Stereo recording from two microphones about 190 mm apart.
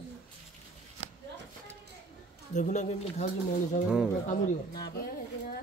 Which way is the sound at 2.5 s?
40° left (ahead or behind).